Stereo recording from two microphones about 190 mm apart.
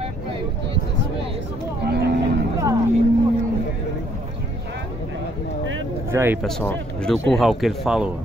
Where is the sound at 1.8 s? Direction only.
60° right (ahead or behind).